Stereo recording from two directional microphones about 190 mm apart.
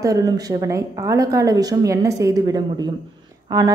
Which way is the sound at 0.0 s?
20° right (ahead or behind).